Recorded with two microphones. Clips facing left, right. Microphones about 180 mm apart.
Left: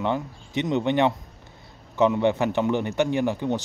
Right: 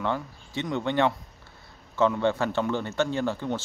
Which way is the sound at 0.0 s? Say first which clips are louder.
Left 3 dB; 20° left (ahead or behind).